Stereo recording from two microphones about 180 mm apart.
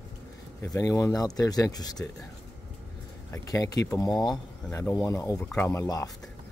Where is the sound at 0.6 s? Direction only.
20° left (ahead or behind).